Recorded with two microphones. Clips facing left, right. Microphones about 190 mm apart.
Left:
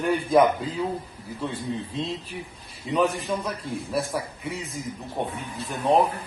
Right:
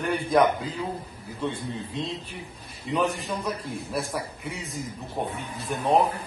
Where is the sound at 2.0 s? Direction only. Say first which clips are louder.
Left 2 dB; centre (ahead or behind).